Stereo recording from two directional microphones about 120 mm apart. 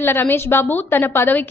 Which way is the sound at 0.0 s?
20° left (ahead or behind).